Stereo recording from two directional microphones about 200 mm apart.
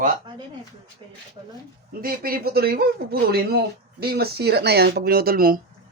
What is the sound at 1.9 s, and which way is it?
Speech, 45° right (ahead or behind).